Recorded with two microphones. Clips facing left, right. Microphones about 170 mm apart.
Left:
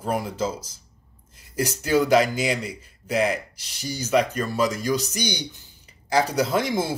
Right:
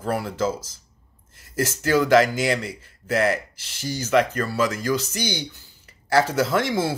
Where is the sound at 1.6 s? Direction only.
15° left (ahead or behind).